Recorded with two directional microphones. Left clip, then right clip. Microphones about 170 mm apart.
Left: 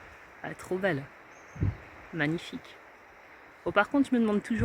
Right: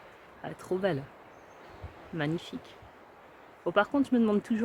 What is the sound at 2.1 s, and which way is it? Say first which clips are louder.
Speech: left 2 dB; 15° left (ahead or behind).